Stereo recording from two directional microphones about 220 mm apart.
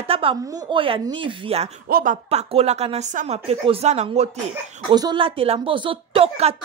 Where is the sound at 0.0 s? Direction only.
25° right (ahead or behind).